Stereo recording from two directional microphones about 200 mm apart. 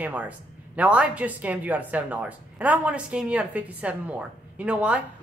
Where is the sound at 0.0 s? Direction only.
5° right (ahead or behind).